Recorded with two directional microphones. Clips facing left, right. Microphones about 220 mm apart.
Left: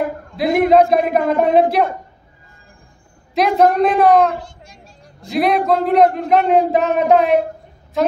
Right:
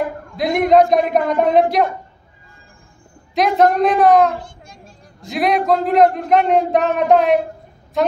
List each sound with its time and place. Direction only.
0.4 s a man's voice: 5° left (ahead or behind)
3.3 s a man's voice: centre (ahead or behind)
4.4 s a sound: 50° right (ahead or behind)
5.2 s a man's voice: centre (ahead or behind)